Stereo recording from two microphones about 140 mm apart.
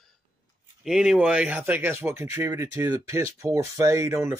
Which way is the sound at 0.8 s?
5° right (ahead or behind).